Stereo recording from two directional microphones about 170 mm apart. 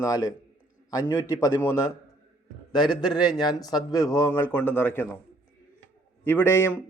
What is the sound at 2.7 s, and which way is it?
Speech, 25° left (ahead or behind).